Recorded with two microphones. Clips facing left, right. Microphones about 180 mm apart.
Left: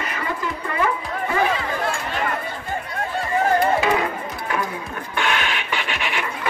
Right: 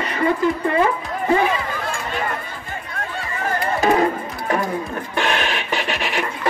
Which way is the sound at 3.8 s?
40° right (ahead or behind).